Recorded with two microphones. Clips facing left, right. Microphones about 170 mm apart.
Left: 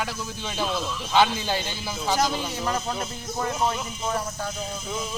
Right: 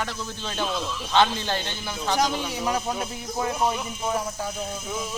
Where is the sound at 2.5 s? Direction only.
10° right (ahead or behind).